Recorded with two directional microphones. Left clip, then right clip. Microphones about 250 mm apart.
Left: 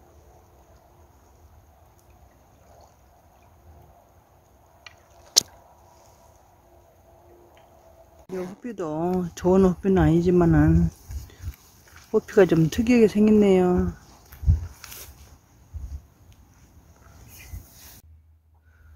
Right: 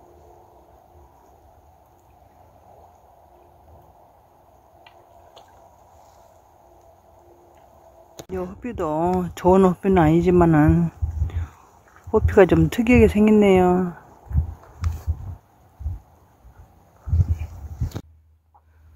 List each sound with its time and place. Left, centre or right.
8.3 s speech: centre
12.1 s speech: centre